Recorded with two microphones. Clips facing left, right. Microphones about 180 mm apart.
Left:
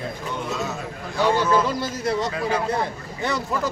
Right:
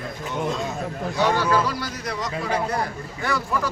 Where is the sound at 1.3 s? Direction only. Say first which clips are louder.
Left 1 dB; 20° left (ahead or behind).